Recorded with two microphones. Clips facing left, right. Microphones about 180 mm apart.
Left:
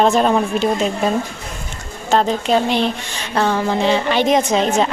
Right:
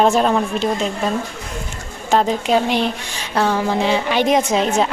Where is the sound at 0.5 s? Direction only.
5° left (ahead or behind).